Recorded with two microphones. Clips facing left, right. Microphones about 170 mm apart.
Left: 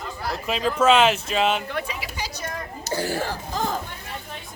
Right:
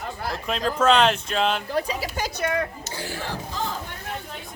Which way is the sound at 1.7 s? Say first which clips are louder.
Right 4 dB; 35° right (ahead or behind).